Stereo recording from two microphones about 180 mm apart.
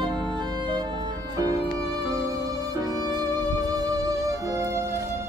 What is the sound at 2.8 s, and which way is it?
Music, 20° right (ahead or behind).